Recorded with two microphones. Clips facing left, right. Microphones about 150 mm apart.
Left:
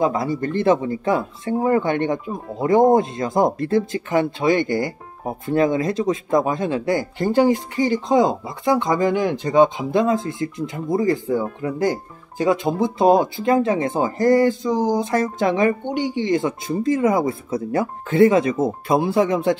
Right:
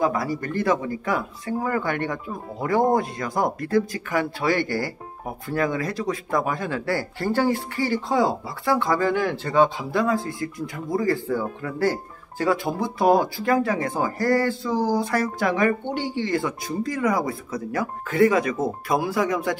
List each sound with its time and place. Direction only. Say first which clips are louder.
0.0 s speech: left 3 dB; 25° left (ahead or behind)